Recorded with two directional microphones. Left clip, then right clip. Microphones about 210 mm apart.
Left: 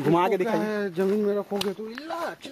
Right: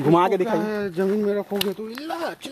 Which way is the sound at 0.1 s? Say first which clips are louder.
Right 4 dB; 30° right (ahead or behind).